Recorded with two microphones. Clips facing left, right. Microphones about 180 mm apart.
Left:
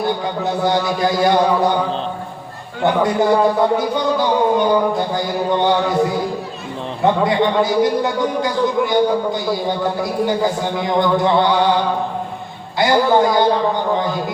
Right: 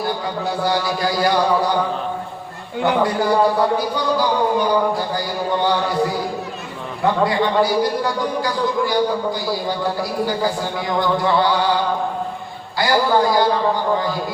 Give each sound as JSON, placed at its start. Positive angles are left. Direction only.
{"t": 0.4, "sound": "a man's voice", "side_deg": 20}
{"t": 2.8, "sound": "a man's voice", "side_deg": 20}
{"t": 12.8, "sound": "a man's voice", "side_deg": 20}